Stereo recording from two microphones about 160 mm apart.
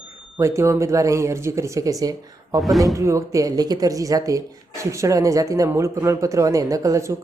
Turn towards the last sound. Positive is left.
turn(degrees=-20)  # may be behind; listen again after turning